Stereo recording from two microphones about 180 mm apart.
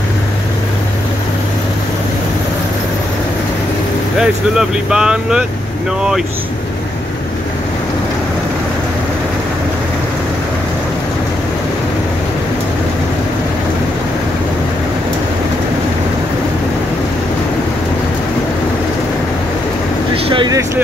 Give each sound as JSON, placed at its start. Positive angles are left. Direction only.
{"t": 4.2, "sound": "speech", "side_deg": -5}
{"t": 20.2, "sound": "vehicle", "side_deg": -30}